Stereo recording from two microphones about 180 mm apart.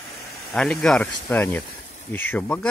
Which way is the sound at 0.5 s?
5° left (ahead or behind).